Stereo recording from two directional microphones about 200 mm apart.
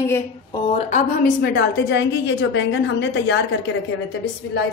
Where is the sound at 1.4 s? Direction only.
65° left (ahead or behind).